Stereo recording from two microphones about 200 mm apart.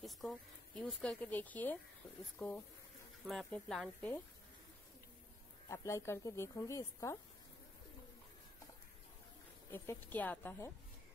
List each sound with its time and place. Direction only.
0.0 s speech: centre (ahead or behind)
5.7 s speech: 15° left (ahead or behind)
9.7 s speech: 10° left (ahead or behind)